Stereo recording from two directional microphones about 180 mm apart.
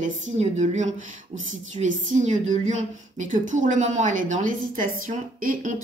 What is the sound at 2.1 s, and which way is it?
A woman's voice, 40° right (ahead or behind).